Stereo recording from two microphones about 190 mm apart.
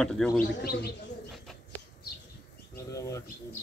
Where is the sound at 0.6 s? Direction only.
55° left (ahead or behind).